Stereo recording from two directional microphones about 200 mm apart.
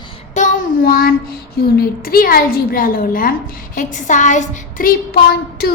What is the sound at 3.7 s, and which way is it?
Child singing, 40° left (ahead or behind).